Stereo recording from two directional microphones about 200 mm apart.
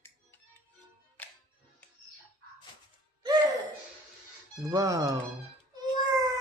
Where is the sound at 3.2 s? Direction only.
20° right (ahead or behind).